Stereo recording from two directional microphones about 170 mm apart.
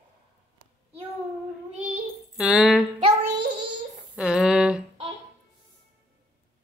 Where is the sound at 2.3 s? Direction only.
5° right (ahead or behind).